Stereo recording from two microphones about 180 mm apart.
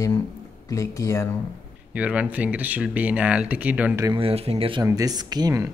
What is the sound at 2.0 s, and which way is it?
Speech, 5° right (ahead or behind).